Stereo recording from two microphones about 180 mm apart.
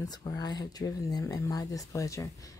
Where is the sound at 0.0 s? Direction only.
20° left (ahead or behind).